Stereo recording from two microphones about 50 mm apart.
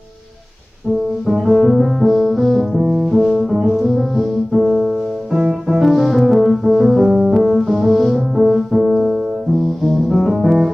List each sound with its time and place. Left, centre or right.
1.2 s music: centre
2.8 s music: centre
3.1 s music: centre
4.6 s music: centre
5.5 s piano: centre
6.6 s music: centre
8.5 s piano: centre
9.8 s music: centre